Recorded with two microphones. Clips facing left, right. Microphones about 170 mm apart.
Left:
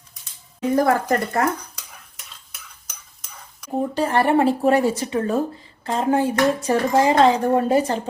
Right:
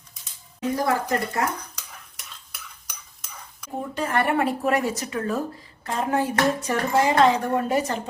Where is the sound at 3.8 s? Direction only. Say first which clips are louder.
Left 5 dB; 35° left (ahead or behind).